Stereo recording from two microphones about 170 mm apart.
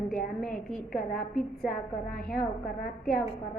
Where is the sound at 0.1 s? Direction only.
5° left (ahead or behind).